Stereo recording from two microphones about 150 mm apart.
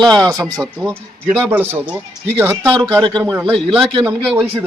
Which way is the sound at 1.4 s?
10° right (ahead or behind).